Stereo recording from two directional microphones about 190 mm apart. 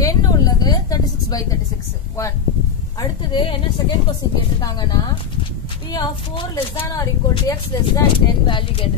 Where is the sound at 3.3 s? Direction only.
25° left (ahead or behind).